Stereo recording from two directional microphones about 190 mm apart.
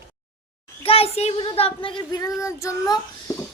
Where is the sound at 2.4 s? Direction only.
15° left (ahead or behind).